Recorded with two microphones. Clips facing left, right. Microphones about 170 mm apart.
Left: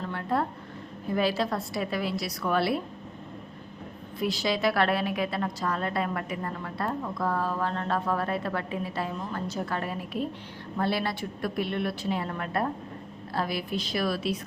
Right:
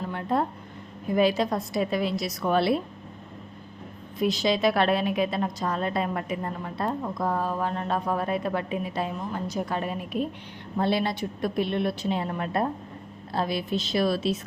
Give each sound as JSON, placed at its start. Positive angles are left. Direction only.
{"t": 0.0, "sound": "a sound", "side_deg": -20}
{"t": 1.0, "sound": "a woman's voice", "side_deg": -20}
{"t": 4.2, "sound": "a woman's voice", "side_deg": -20}